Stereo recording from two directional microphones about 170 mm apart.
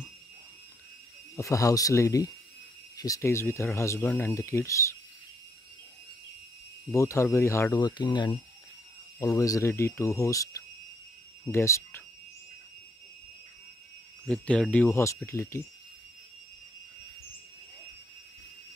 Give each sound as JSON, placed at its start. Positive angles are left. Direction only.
{"t": 1.3, "sound": "speech", "side_deg": 20}
{"t": 6.9, "sound": "speech", "side_deg": 15}
{"t": 14.2, "sound": "speech", "side_deg": 5}